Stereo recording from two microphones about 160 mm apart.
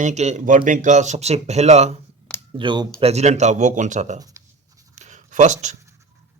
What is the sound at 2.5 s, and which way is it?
Speech, 30° right (ahead or behind).